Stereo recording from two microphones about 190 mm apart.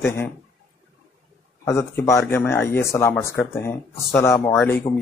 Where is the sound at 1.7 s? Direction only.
15° left (ahead or behind).